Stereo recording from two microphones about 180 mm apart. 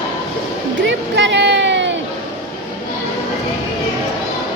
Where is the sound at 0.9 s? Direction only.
75° right (ahead or behind).